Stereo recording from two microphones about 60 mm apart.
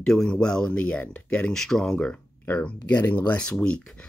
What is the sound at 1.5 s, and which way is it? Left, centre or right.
Speech, centre.